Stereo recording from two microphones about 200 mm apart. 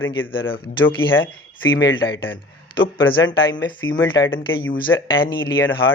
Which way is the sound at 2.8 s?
85° left.